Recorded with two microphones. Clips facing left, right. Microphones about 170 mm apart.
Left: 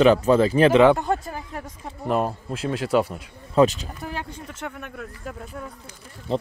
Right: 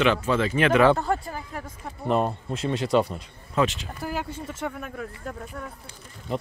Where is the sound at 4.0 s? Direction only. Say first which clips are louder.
Right 3 dB; 5° right (ahead or behind).